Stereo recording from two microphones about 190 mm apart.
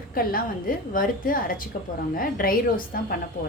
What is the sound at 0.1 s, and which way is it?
A woman's voice, 50° left (ahead or behind).